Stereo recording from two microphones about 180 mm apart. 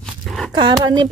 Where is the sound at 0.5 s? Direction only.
25° right (ahead or behind).